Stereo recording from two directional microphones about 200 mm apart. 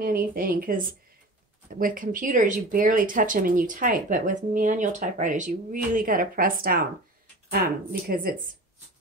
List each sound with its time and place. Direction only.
0.0 s speech: 45° right (ahead or behind)
8.1 s speech: 45° right (ahead or behind)